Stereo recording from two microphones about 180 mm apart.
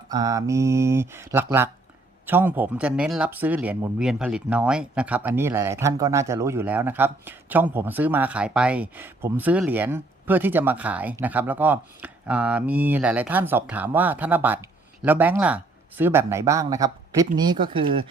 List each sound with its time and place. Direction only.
0.1 s speech: 20° right (ahead or behind)